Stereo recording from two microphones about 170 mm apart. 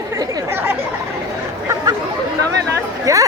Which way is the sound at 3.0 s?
20° right (ahead or behind).